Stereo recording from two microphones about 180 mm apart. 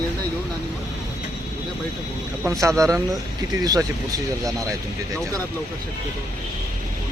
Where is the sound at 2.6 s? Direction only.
20° right (ahead or behind).